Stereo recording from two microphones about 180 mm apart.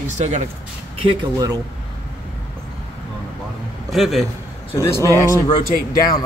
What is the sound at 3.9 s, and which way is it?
Speech, centre (ahead or behind).